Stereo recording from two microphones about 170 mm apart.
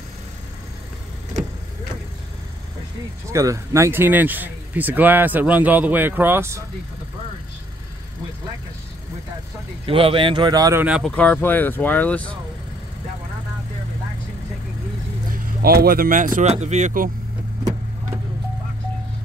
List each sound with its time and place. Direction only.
3.3 s speech: 20° right (ahead or behind)
9.8 s a man's voice: 30° right (ahead or behind)
10.8 s speech: 5° right (ahead or behind)
11.1 s speech: 10° left (ahead or behind)
15.6 s speech: 65° right (ahead or behind); by 17.1 s 50° right (ahead or behind)